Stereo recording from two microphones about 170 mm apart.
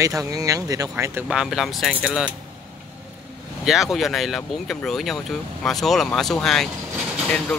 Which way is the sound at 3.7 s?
Centre (ahead or behind).